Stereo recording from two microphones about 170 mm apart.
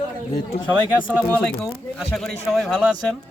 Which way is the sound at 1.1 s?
5° right (ahead or behind).